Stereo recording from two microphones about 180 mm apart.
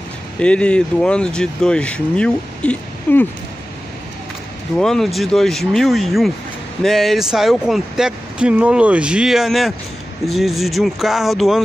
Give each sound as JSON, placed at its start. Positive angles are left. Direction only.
{"t": 0.4, "sound": "speech", "side_deg": 5}
{"t": 4.7, "sound": "speech", "side_deg": 0}